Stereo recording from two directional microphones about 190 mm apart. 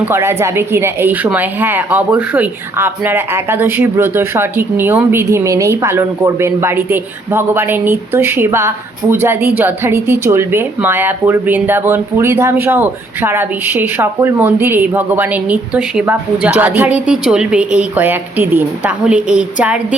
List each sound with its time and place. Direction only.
0.0 s speech: 15° right (ahead or behind)